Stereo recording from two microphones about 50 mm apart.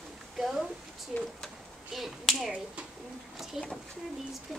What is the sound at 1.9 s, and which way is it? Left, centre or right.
Speech, centre.